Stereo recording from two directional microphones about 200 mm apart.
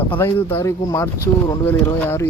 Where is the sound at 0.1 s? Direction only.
10° left (ahead or behind).